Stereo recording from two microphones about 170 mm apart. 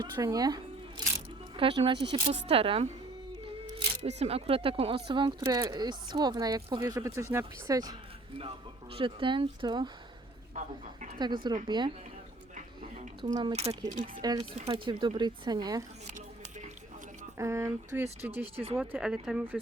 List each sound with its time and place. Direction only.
0.0 s speech: 20° right (ahead or behind)
2.1 s speech: 40° right (ahead or behind); by 7.9 s 20° right (ahead or behind)
8.4 s speech: 35° right (ahead or behind)
10.5 s a woman's voice: 50° right (ahead or behind)
11.4 s speech: 25° right (ahead or behind)
13.2 s speech: 25° right (ahead or behind)
13.5 s speech: 40° right (ahead or behind)
14.2 s speech: 25° right (ahead or behind)
14.5 s speech: 35° right (ahead or behind)
16.0 s a sound: 45° right (ahead or behind)
17.3 s speech: 15° right (ahead or behind)